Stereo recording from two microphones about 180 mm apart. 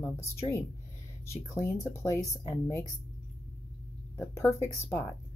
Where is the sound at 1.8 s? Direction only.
15° left (ahead or behind).